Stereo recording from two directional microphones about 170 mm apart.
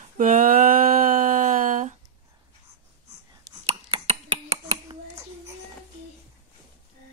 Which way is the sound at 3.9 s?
35° right (ahead or behind).